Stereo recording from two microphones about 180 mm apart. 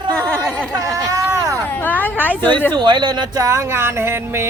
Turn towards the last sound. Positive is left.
turn(degrees=-15)  # may be behind; listen again after turning